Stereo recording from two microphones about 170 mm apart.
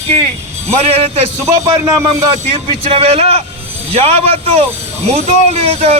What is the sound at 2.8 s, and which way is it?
Speech, 35° right (ahead or behind).